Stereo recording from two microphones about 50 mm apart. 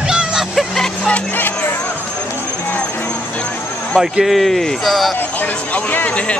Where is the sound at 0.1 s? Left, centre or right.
Centre.